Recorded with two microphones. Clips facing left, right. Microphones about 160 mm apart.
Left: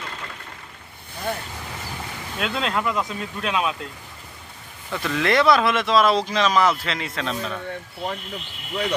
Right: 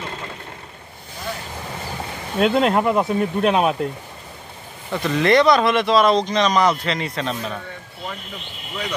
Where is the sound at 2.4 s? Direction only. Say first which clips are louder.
Right 8 dB; 30° right (ahead or behind).